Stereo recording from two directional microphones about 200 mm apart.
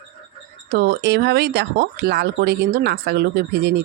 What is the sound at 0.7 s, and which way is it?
Speech, 55° right (ahead or behind).